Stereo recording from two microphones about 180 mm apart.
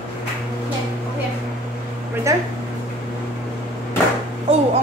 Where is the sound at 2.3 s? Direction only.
20° right (ahead or behind).